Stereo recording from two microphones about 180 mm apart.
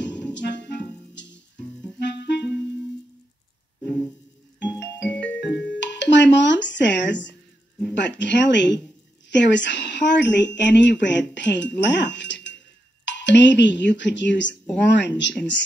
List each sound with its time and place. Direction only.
0.0 s music: 80° left
2.0 s clarinet: 75° left (ahead or behind)
5.1 s music: 5° left (ahead or behind)
5.8 s speech: 80° left